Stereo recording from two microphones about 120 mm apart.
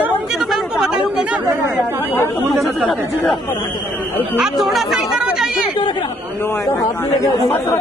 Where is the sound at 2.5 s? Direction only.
Centre (ahead or behind).